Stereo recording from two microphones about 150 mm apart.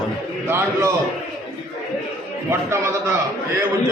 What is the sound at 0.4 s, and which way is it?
Speech, 15° right (ahead or behind).